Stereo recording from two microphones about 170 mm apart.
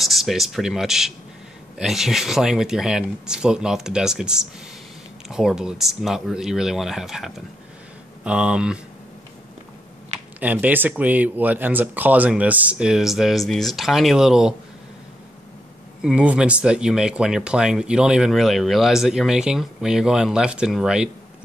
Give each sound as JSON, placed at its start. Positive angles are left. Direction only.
{"t": 0.0, "sound": "speech", "side_deg": 0}
{"t": 10.4, "sound": "speech", "side_deg": -10}
{"t": 16.0, "sound": "speech", "side_deg": -5}